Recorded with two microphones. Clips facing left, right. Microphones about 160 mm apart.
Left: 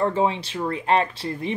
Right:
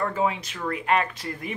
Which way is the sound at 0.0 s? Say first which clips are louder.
Left 4 dB; 30° left (ahead or behind).